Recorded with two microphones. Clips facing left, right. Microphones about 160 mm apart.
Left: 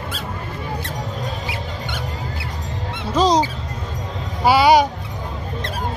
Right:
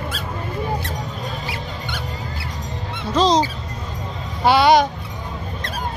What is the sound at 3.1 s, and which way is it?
Speech, 10° left (ahead or behind).